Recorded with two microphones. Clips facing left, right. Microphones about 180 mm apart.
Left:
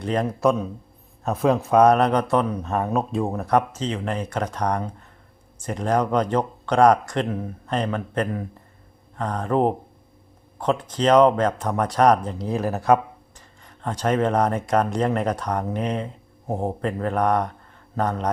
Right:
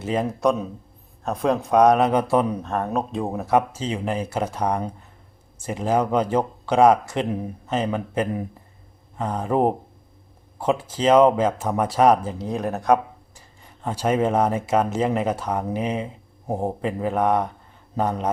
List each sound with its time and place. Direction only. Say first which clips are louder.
0.0 s speech: left 1 dB; 5° right (ahead or behind)
2.6 s speech: left 1 dB; 5° left (ahead or behind)